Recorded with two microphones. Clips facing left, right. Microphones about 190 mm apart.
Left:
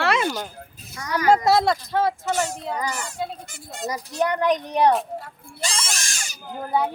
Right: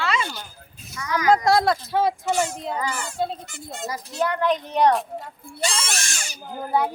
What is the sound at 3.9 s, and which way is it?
Speech, 20° left (ahead or behind).